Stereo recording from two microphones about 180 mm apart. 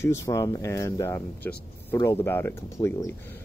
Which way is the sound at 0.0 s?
15° left (ahead or behind).